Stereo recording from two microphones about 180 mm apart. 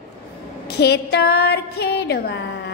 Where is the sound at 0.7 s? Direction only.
70° left (ahead or behind).